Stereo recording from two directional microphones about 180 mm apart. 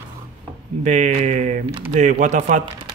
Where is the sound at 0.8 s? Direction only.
40° right (ahead or behind).